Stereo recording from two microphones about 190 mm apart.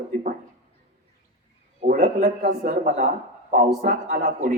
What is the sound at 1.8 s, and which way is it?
Speech, 50° right (ahead or behind).